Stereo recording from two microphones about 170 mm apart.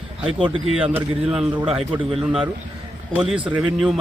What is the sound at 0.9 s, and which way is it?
A man's voice, 5° right (ahead or behind).